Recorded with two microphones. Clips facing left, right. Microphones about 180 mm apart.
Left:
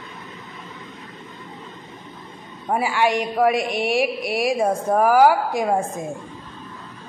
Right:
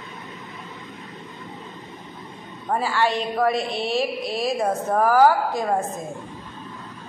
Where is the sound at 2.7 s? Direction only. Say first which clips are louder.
Left 2 dB; 15° left (ahead or behind).